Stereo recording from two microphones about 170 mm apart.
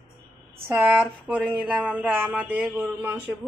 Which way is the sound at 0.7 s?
10° right (ahead or behind).